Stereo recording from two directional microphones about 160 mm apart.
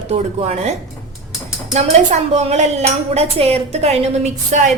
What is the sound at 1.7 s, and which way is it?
A woman's voice, 45° right (ahead or behind).